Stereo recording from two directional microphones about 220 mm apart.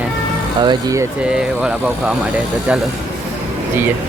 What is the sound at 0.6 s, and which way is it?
Speech, 20° right (ahead or behind).